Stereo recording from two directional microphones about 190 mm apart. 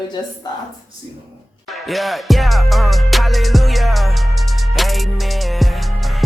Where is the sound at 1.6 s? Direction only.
Centre (ahead or behind).